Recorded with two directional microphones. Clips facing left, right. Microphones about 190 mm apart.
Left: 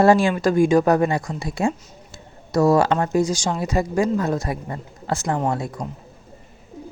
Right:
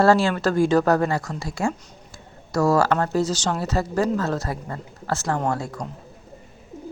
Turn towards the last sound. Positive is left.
turn(degrees=20)  # may be behind; listen again after turning